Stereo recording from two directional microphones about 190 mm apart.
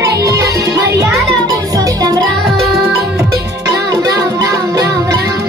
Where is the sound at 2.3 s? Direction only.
Centre (ahead or behind).